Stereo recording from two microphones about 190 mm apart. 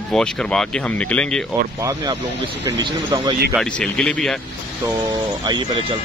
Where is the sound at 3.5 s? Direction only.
5° left (ahead or behind).